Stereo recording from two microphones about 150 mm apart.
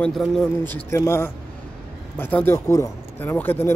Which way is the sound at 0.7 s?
15° left (ahead or behind).